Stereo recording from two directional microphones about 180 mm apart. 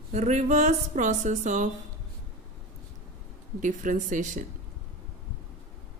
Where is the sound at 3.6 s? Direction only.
45° right (ahead or behind).